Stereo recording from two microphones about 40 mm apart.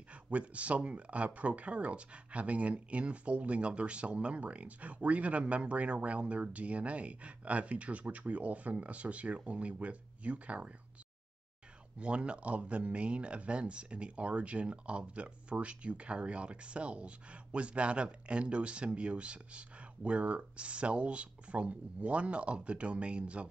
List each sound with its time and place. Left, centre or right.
0.1 s speech: right
12.0 s speech: right